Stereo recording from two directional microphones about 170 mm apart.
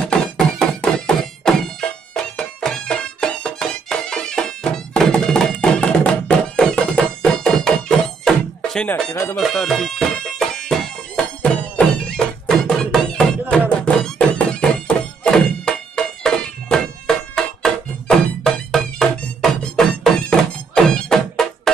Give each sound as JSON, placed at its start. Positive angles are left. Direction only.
{"t": 0.0, "sound": "music", "side_deg": 5}
{"t": 9.1, "sound": "speech", "side_deg": 15}
{"t": 9.4, "sound": "bagpipes", "side_deg": 0}
{"t": 10.7, "sound": "music", "side_deg": 5}